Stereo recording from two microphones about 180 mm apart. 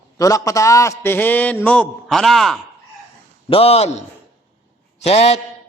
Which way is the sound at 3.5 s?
35° left (ahead or behind).